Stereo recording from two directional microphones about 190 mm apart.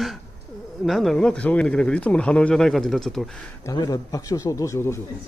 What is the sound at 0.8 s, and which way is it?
Speech, centre (ahead or behind).